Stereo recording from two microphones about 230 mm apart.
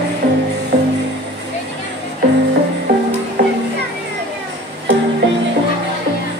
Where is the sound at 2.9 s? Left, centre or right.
Right.